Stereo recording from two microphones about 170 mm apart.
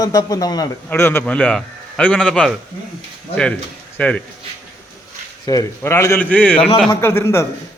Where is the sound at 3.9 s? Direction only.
5° left (ahead or behind).